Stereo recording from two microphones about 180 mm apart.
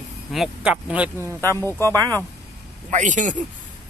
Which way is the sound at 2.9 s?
45° right (ahead or behind).